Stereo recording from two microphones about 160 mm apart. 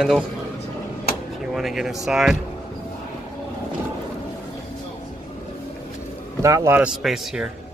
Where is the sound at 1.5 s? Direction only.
Centre (ahead or behind).